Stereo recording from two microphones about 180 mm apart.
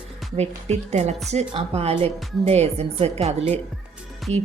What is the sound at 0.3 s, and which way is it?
A woman's voice, 35° right (ahead or behind).